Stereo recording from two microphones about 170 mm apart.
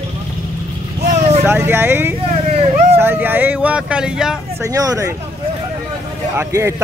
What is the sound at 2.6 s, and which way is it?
Vehicle, 40° right (ahead or behind).